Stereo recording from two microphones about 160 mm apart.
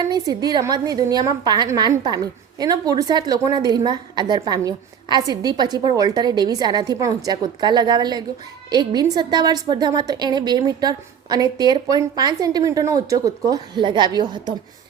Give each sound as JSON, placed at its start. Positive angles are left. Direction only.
{"t": 0.0, "sound": "a woman's voice", "side_deg": -25}